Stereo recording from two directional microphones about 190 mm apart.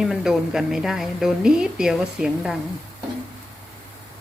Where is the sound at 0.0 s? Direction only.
Centre (ahead or behind).